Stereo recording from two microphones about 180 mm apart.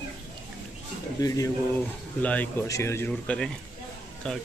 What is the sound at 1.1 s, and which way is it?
Speech, 20° left (ahead or behind).